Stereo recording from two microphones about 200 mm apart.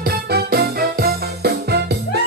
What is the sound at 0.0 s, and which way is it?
Music, 50° right (ahead or behind).